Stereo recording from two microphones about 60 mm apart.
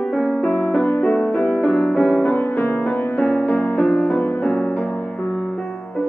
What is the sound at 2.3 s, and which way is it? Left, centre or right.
Music, left.